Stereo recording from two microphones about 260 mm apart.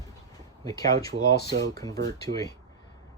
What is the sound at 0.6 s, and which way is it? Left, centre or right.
Speech, centre.